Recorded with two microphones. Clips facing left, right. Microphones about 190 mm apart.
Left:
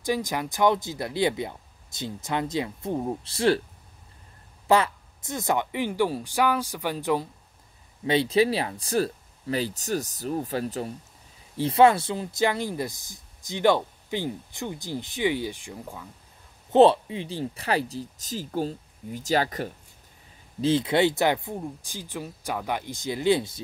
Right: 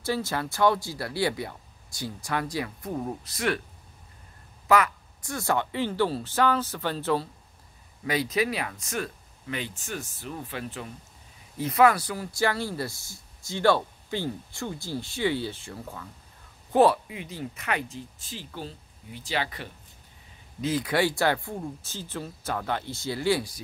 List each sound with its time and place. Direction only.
0.0 s speech: 15° left (ahead or behind)
4.6 s speech: 30° left (ahead or behind)
8.0 s speech: 25° left (ahead or behind)
16.7 s speech: 25° left (ahead or behind); by 19.7 s 40° left (ahead or behind)
20.6 s speech: 25° left (ahead or behind)